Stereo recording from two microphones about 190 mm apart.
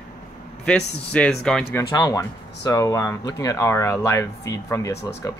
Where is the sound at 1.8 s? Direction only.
20° left (ahead or behind).